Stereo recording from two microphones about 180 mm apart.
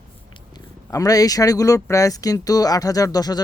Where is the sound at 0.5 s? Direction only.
20° left (ahead or behind).